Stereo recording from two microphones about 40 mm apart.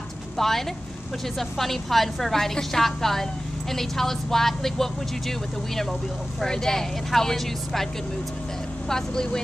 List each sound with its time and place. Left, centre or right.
0.4 s a woman's voice: centre
6.4 s speech: centre